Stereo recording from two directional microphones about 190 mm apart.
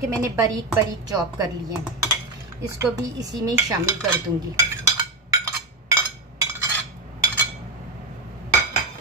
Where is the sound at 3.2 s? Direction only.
15° right (ahead or behind).